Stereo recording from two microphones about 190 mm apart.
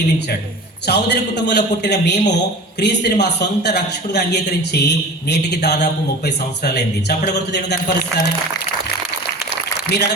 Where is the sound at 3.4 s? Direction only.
60° left (ahead or behind).